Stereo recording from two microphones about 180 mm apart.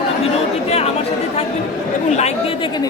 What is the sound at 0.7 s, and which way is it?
Speech, 35° left (ahead or behind).